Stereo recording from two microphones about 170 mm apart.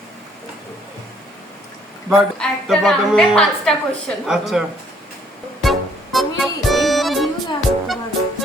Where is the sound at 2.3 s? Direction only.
Centre (ahead or behind).